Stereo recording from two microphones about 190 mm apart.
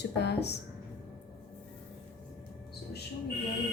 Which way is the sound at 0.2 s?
60° left (ahead or behind).